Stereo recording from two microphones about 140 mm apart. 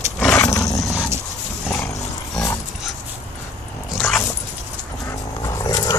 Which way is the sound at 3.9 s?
5° left (ahead or behind).